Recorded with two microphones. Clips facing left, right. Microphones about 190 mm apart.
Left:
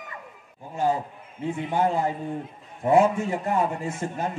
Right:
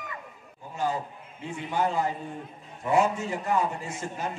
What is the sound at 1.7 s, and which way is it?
A man's voice, 55° left (ahead or behind).